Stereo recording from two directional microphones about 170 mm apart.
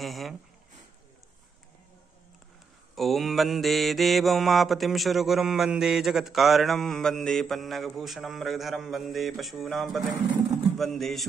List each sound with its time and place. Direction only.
0.0 s mantra: centre (ahead or behind)
3.0 s mantra: centre (ahead or behind)